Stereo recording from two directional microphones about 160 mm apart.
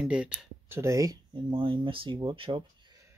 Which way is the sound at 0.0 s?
5° right (ahead or behind).